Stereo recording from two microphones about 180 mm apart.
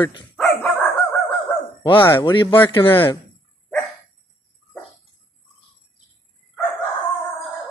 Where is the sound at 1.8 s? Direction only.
25° left (ahead or behind).